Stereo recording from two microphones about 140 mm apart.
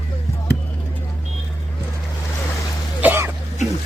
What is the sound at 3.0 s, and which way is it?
Cough, 15° right (ahead or behind).